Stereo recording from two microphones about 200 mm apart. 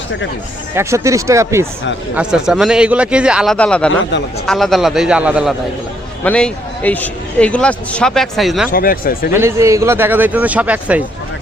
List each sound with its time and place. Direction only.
0.8 s a man's voice: 15° right (ahead or behind)
2.1 s speech: 5° right (ahead or behind)
6.2 s speech: 5° left (ahead or behind)
8.7 s speech: 45° left (ahead or behind)
9.3 s a man's voice: 15° right (ahead or behind)